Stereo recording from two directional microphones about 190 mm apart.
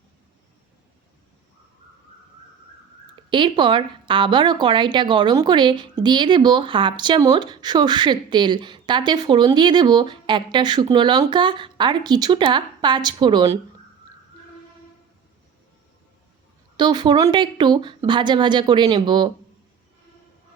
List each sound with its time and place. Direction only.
3.2 s a woman's voice: 25° right (ahead or behind)
16.7 s a woman's voice: 25° right (ahead or behind)